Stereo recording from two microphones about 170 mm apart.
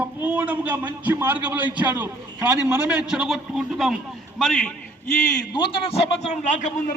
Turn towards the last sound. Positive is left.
turn(degrees=45)  # may be behind; listen again after turning